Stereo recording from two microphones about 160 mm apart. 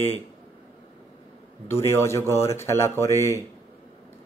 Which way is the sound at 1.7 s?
15° left (ahead or behind).